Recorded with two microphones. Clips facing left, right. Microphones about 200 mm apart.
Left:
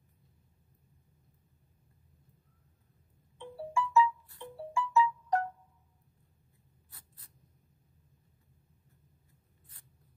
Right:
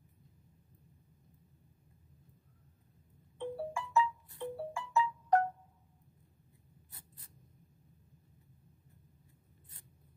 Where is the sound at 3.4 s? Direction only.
55° right (ahead or behind).